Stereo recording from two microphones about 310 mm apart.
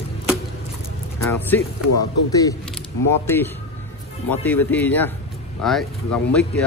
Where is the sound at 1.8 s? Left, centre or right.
Left.